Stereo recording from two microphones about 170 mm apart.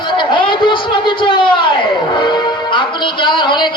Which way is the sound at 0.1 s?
30° left (ahead or behind).